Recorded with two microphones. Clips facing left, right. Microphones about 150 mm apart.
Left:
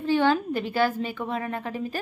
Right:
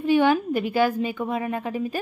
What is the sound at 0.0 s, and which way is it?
A woman's voice, 15° right (ahead or behind).